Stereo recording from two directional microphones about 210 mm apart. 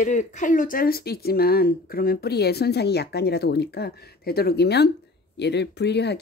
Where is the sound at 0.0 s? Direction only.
35° left (ahead or behind).